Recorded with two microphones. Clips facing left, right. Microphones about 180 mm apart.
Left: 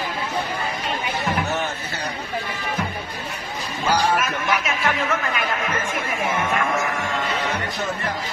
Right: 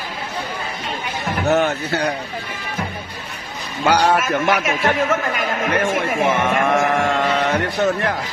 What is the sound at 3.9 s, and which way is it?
Speech, 70° right (ahead or behind).